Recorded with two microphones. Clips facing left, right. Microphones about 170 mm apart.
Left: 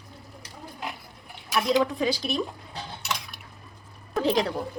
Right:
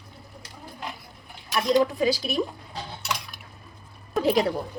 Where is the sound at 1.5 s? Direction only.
Centre (ahead or behind).